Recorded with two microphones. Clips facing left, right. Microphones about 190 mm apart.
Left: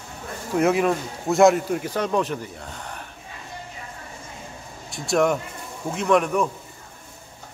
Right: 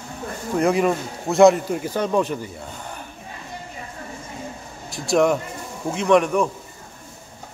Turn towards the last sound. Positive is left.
turn(degrees=0)  # may be behind; listen again after turning